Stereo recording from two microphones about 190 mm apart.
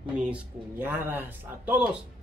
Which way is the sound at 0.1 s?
5° right (ahead or behind).